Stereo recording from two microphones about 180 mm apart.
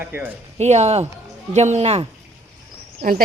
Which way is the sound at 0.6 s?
40° right (ahead or behind).